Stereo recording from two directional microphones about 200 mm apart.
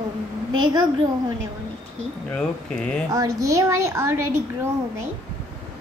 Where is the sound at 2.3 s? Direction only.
5° left (ahead or behind).